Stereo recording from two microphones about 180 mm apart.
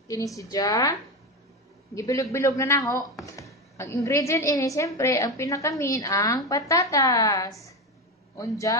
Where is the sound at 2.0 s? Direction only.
15° left (ahead or behind).